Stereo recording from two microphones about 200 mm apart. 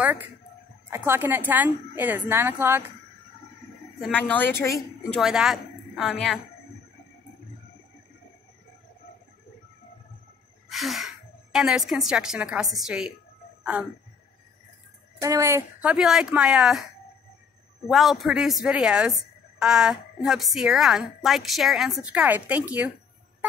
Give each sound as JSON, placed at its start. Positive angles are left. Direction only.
{"t": 0.0, "sound": "a woman's voice", "side_deg": -10}
{"t": 4.0, "sound": "speech", "side_deg": 5}
{"t": 4.7, "sound": "a woman's voice", "side_deg": 0}
{"t": 10.7, "sound": "a woman's voice", "side_deg": 0}
{"t": 15.1, "sound": "speech", "side_deg": -15}